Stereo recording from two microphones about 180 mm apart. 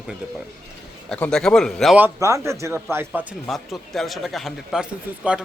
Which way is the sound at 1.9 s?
15° right (ahead or behind).